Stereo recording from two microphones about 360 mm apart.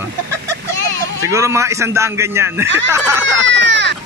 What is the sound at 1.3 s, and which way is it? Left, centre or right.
A man's voice, centre.